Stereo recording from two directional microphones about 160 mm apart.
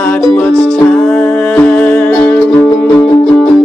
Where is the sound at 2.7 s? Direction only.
20° left (ahead or behind).